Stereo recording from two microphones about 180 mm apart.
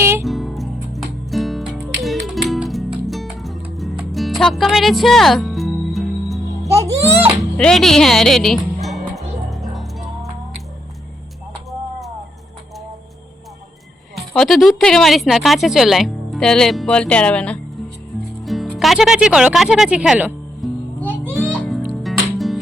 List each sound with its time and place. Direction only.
0.0 s music: 15° right (ahead or behind)
0.3 s music: centre (ahead or behind)
6.7 s a child's voice: 15° right (ahead or behind)
7.5 s music: 5° left (ahead or behind)
11.7 s a sound: centre (ahead or behind)
14.3 s speech: centre (ahead or behind)
21.0 s music: 5° left (ahead or behind)